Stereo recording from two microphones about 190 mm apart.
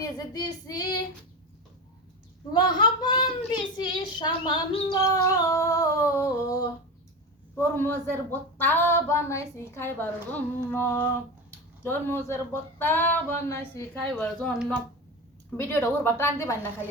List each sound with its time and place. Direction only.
0.0 s a child's voice: 20° left (ahead or behind)
2.5 s a child's voice: 25° left (ahead or behind)
14.3 s a woman's voice: centre (ahead or behind)